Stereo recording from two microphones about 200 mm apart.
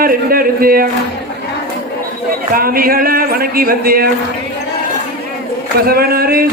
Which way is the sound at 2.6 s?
45° right (ahead or behind).